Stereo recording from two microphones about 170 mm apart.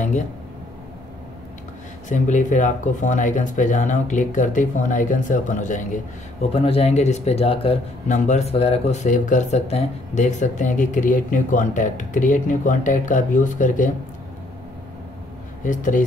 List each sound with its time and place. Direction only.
2.0 s speech: 45° left (ahead or behind)
6.5 s speech: 35° left (ahead or behind)
15.6 s speech: 50° left (ahead or behind)